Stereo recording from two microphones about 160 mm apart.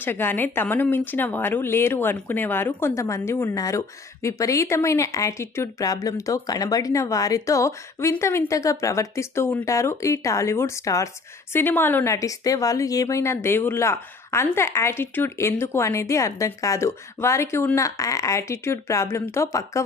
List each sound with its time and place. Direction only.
0.0 s a woman's voice: 15° left (ahead or behind)